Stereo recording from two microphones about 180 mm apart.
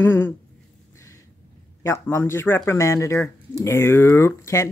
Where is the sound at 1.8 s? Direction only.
15° left (ahead or behind).